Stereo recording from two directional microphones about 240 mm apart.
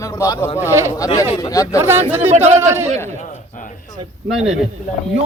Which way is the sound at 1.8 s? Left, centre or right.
Centre.